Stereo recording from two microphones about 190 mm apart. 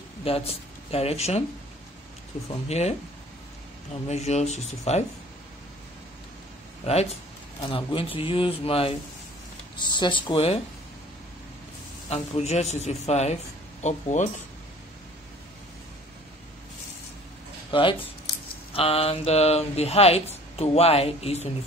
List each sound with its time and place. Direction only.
0.2 s speech: 30° left (ahead or behind)
4.1 s speech: 35° left (ahead or behind)
6.9 s a man's voice: 35° left (ahead or behind)
12.1 s speech: 35° left (ahead or behind)
17.6 s speech: 25° left (ahead or behind)